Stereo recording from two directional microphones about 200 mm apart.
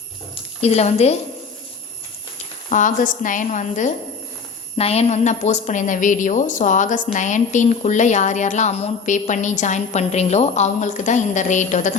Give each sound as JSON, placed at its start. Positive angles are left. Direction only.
{"t": 0.6, "sound": "a woman's voice", "side_deg": 30}
{"t": 2.6, "sound": "a woman's voice", "side_deg": 40}